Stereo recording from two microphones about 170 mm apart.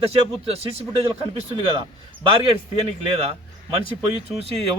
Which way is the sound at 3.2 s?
35° right (ahead or behind).